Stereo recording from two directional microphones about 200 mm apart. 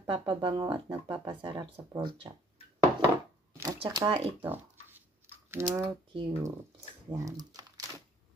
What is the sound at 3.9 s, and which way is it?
Speech, 25° right (ahead or behind).